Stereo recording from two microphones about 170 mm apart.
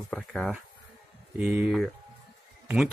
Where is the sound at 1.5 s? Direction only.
5° right (ahead or behind).